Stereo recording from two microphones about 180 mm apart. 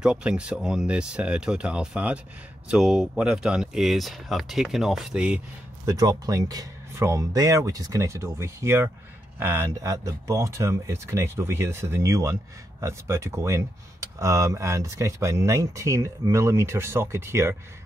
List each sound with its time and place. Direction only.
0.0 s speech: 5° right (ahead or behind)
5.9 s speech: 20° right (ahead or behind)